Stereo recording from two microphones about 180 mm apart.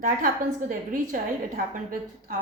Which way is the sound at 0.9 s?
50° right (ahead or behind).